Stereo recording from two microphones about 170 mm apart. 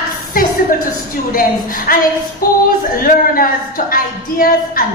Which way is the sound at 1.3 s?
55° left (ahead or behind).